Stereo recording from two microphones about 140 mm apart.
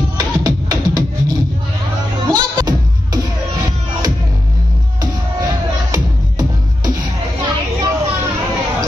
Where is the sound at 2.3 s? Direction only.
30° right (ahead or behind).